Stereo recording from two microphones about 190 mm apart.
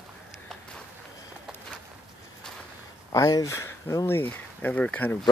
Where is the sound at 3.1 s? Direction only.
20° left (ahead or behind).